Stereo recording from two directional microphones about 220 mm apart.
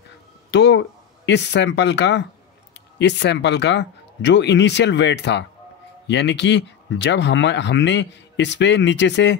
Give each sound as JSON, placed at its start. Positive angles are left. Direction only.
{"t": 0.5, "sound": "speech", "side_deg": 50}